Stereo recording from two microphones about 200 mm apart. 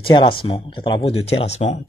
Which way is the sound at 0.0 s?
25° left (ahead or behind).